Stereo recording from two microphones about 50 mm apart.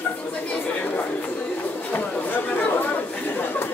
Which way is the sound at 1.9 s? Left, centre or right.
Left.